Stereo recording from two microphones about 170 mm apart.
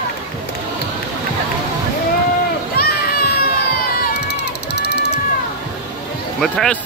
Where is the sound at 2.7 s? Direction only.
65° left (ahead or behind).